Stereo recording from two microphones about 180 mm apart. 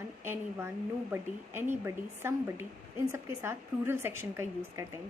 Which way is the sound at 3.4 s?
15° right (ahead or behind).